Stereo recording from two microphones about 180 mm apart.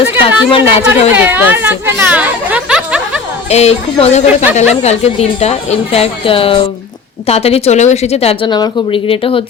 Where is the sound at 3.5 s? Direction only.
35° left (ahead or behind).